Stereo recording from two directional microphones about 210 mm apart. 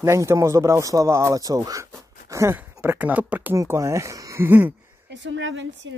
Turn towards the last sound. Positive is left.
turn(degrees=-65)  # may be behind; listen again after turning